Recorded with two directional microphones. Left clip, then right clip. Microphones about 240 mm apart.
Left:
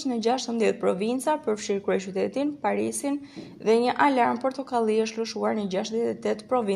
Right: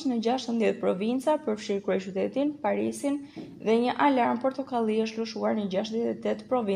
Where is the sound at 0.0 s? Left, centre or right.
Left.